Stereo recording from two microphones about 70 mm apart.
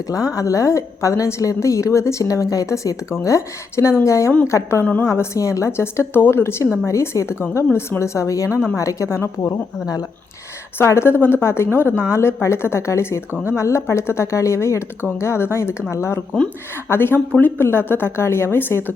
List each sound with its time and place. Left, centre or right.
0.3 s a woman's voice: left
5.4 s a woman's voice: left
9.5 s speech: left
10.8 s speech: left